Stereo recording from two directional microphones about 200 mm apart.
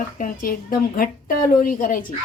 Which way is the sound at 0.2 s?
45° left (ahead or behind).